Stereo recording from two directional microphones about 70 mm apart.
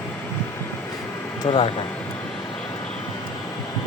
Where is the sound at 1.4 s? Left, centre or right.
Left.